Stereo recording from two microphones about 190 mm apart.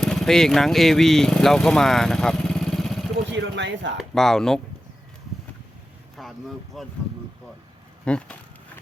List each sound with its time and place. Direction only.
0.0 s speech: centre (ahead or behind)
3.2 s speech: 70° right (ahead or behind)
3.9 s speech: centre (ahead or behind)
6.2 s vehicle: centre (ahead or behind)
6.7 s speech: centre (ahead or behind)
8.0 s speech: 5° left (ahead or behind)